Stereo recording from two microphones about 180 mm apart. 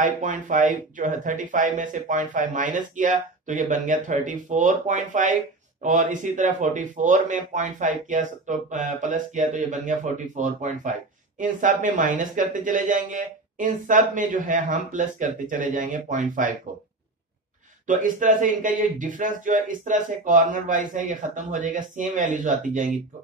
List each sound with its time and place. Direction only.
0.0 s speech: 45° right (ahead or behind)
17.8 s speech: 45° right (ahead or behind)